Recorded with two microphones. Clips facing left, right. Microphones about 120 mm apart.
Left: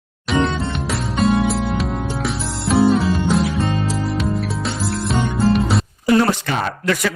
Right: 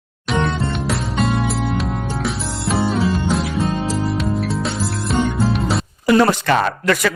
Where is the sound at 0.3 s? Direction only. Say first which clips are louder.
Left 1 dB; centre (ahead or behind).